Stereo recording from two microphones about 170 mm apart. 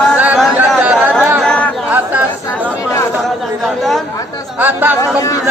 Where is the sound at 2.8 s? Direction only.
15° left (ahead or behind).